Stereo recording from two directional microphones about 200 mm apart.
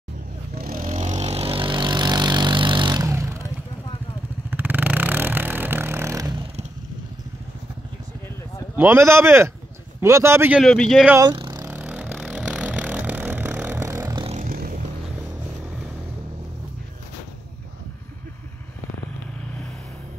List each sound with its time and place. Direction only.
0.6 s vehicle: 45° right (ahead or behind); by 3.4 s 15° right (ahead or behind)
4.5 s vehicle: 10° right (ahead or behind)
8.7 s a man's voice: 10° right (ahead or behind)
10.6 s a man's voice: centre (ahead or behind)
11.1 s a man's voice: 15° right (ahead or behind)
11.3 s a sound: 20° right (ahead or behind)
11.6 s vehicle: 10° right (ahead or behind); by 14.4 s 25° right (ahead or behind)
14.4 s vehicle: 45° right (ahead or behind)